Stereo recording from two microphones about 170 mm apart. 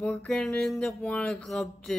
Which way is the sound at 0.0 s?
5° left (ahead or behind).